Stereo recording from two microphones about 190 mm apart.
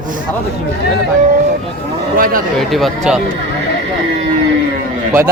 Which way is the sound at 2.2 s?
50° right (ahead or behind).